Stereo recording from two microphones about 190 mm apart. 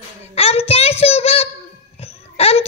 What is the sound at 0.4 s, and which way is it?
Child singing, 30° left (ahead or behind).